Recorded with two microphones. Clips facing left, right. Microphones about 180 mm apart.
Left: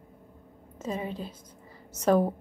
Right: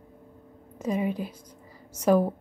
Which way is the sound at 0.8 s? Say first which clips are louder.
Right 5 dB; 15° right (ahead or behind).